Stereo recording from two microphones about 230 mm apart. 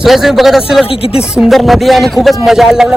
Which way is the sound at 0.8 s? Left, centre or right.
Left.